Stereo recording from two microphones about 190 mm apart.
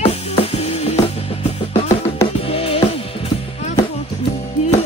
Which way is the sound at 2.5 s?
30° left (ahead or behind).